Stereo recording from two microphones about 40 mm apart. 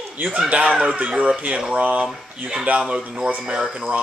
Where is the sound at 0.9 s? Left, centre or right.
Right.